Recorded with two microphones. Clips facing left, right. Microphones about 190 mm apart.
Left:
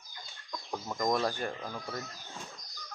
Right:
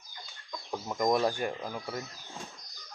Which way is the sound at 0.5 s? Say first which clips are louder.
Right 2 dB; 5° right (ahead or behind).